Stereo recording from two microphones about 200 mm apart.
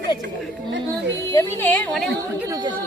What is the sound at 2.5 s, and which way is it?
Speech, 20° right (ahead or behind).